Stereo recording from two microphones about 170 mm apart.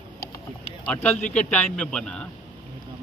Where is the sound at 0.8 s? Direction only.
10° left (ahead or behind).